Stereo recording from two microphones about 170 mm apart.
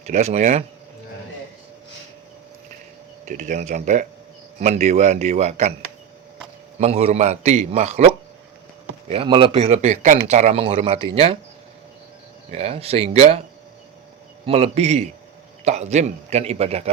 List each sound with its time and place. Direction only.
0.1 s speech: 40° right (ahead or behind)
3.2 s a man's voice: 50° right (ahead or behind)
6.7 s a man's voice: 40° right (ahead or behind)
12.5 s a man's voice: 40° right (ahead or behind)
14.4 s a man's voice: 35° right (ahead or behind)